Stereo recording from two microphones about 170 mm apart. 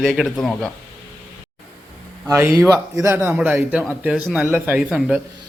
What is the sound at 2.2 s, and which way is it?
A man's voice, 15° right (ahead or behind).